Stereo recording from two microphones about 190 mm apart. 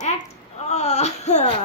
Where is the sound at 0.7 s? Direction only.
35° left (ahead or behind).